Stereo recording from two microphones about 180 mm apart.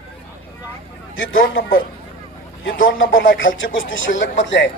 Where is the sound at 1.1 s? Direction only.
90° left.